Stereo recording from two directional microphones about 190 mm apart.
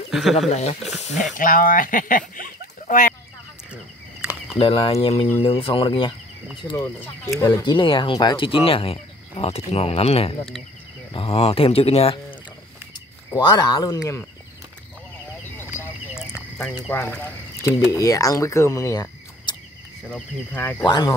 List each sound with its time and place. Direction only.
0.1 s speech: centre (ahead or behind)
0.5 s speech: 35° left (ahead or behind)
4.6 s speech: 30° left (ahead or behind)
6.6 s speech: 15° left (ahead or behind); by 12.2 s 30° left (ahead or behind)
13.3 s speech: 20° left (ahead or behind)
16.9 s speech: 10° left (ahead or behind)
20.8 s speech: 25° left (ahead or behind)